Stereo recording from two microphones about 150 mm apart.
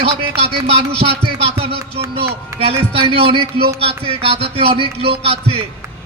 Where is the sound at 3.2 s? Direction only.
40° right (ahead or behind).